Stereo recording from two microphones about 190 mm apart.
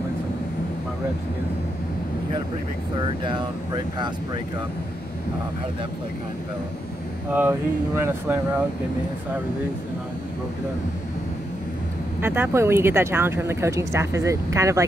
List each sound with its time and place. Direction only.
3.0 s speech: 25° right (ahead or behind)
7.3 s speech: 10° right (ahead or behind)
12.2 s speech: 10° right (ahead or behind)